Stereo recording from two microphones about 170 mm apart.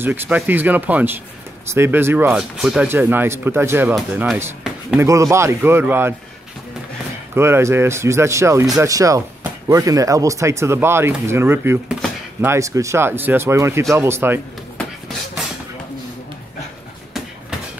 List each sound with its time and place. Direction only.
0.0 s speech: 10° right (ahead or behind)
7.3 s speech: 15° right (ahead or behind)